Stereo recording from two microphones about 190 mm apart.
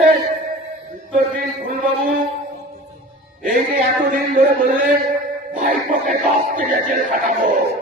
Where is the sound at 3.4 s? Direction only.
45° right (ahead or behind).